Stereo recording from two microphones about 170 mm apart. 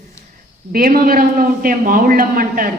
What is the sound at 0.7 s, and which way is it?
A woman's voice, 60° right (ahead or behind).